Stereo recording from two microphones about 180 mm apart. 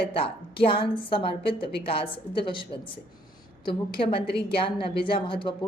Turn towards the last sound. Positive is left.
turn(degrees=30)  # may be behind; listen again after turning